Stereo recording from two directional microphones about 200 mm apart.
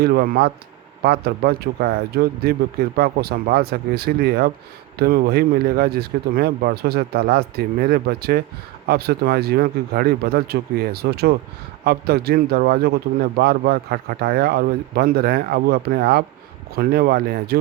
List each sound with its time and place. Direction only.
0.0 s speech: 50° right (ahead or behind)